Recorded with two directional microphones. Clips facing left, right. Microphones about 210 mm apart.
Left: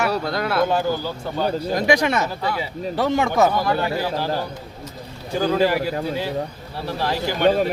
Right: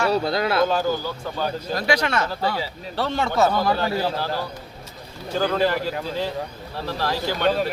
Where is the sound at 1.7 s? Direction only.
20° left (ahead or behind).